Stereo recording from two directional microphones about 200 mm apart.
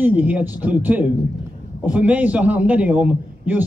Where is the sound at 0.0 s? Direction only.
10° right (ahead or behind).